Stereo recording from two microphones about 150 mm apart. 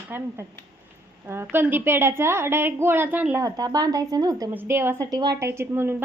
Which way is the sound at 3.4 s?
25° right (ahead or behind).